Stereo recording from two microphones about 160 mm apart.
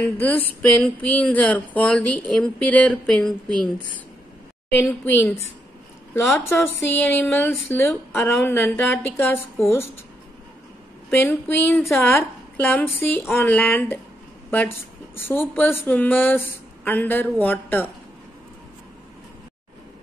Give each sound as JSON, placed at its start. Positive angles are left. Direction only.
{"t": 0.0, "sound": "speech", "side_deg": 10}
{"t": 4.6, "sound": "speech", "side_deg": 10}
{"t": 6.3, "sound": "speech", "side_deg": 10}
{"t": 11.1, "sound": "a woman's voice", "side_deg": 15}
{"t": 15.1, "sound": "speech", "side_deg": 15}